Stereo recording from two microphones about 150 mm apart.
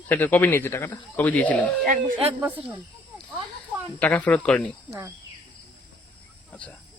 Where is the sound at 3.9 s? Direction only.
10° left (ahead or behind).